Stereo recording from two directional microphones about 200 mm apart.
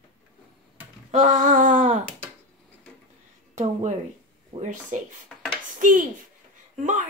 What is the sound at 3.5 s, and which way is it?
Speech, 35° right (ahead or behind).